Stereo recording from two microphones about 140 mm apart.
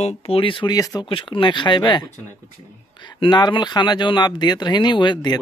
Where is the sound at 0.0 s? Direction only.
50° left (ahead or behind); by 1.0 s 25° left (ahead or behind).